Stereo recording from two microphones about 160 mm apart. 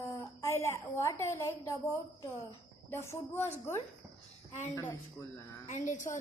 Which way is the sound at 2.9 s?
15° left (ahead or behind).